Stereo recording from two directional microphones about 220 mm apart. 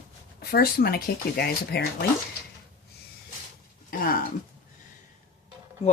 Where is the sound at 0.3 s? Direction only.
45° left (ahead or behind).